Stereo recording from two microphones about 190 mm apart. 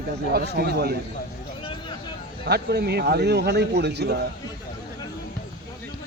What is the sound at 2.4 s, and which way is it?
A man's voice, 60° right (ahead or behind).